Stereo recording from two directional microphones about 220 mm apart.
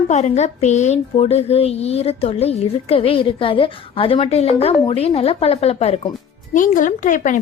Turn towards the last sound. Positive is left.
turn(degrees=35)  # may be behind; listen again after turning